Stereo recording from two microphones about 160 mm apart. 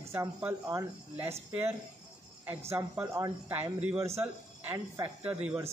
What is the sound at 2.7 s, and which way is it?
Speech, 20° right (ahead or behind).